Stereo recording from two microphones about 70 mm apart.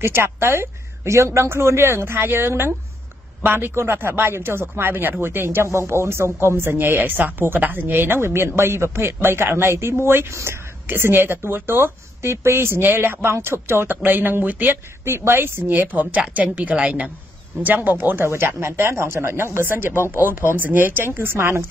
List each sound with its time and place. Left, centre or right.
0.0 s speech: right